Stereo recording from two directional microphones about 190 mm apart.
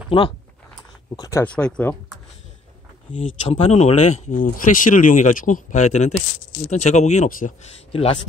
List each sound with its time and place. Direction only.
0.1 s speech: 30° left (ahead or behind)
1.4 s speech: 5° left (ahead or behind)
3.1 s speech: 30° left (ahead or behind)
7.9 s speech: 30° left (ahead or behind)